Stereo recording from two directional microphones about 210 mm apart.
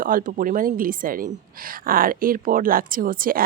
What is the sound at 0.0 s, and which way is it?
A woman's voice, 40° right (ahead or behind).